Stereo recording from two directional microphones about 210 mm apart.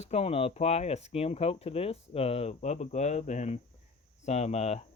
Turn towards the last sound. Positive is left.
turn(degrees=30)  # may be behind; listen again after turning